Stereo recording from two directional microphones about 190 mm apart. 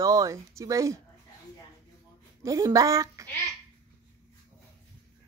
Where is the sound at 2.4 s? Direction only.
15° right (ahead or behind).